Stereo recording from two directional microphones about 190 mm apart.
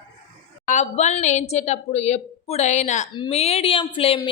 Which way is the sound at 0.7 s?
40° left (ahead or behind).